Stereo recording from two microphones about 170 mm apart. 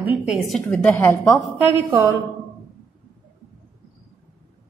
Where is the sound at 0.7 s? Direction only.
10° left (ahead or behind).